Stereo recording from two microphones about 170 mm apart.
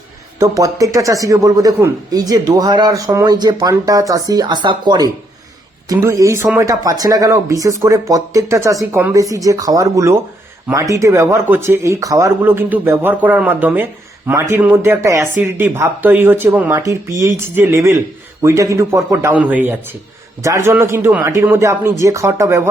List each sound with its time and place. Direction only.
0.3 s speech: 20° right (ahead or behind)